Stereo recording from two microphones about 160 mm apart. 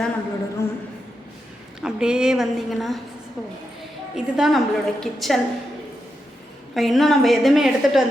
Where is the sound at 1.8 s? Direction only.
5° right (ahead or behind).